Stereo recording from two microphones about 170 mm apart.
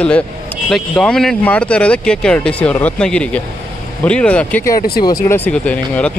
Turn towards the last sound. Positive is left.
turn(degrees=10)  # may be behind; listen again after turning